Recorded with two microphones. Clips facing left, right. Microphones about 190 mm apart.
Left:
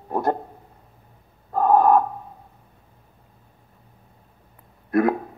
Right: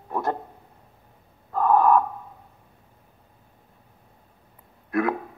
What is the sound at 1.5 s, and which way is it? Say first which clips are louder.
Gasp: left 2 dB; 35° left (ahead or behind).